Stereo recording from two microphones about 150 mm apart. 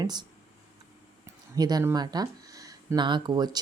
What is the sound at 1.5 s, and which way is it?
Speech, 25° right (ahead or behind).